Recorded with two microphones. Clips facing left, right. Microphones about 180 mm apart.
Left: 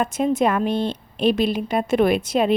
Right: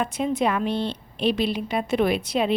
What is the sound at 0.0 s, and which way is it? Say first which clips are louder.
A woman's voice: left 4 dB; 45° left (ahead or behind).